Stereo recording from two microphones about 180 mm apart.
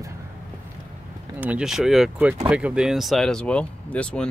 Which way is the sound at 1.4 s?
5° right (ahead or behind).